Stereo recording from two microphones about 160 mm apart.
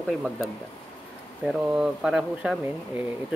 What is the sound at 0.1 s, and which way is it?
Speech, centre (ahead or behind).